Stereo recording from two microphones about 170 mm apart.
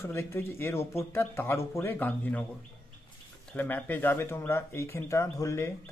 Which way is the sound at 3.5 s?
10° left (ahead or behind).